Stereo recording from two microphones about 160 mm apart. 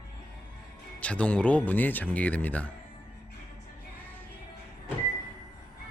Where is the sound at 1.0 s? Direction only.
10° left (ahead or behind).